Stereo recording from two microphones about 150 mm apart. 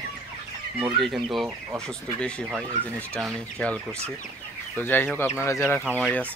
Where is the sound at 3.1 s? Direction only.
5° left (ahead or behind).